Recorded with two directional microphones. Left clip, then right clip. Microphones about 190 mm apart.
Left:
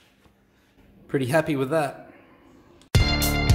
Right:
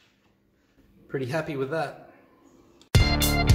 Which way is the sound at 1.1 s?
35° left (ahead or behind).